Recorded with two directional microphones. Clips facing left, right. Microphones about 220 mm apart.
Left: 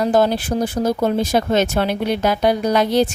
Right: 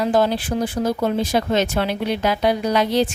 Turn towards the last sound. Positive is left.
turn(degrees=45)  # may be behind; listen again after turning